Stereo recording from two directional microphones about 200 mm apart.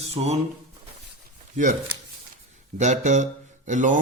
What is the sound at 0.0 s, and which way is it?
Speech, 30° right (ahead or behind).